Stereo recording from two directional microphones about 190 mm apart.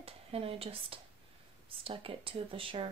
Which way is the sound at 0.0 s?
30° right (ahead or behind).